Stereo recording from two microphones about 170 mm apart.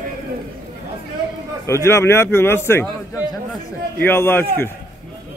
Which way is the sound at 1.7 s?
15° left (ahead or behind).